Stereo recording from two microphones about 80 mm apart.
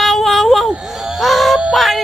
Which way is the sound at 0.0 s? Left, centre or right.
Centre.